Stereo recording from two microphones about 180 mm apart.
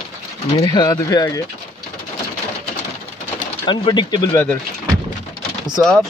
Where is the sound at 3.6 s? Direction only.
25° left (ahead or behind).